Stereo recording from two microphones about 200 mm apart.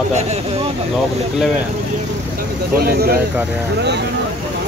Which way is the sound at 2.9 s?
50° right (ahead or behind).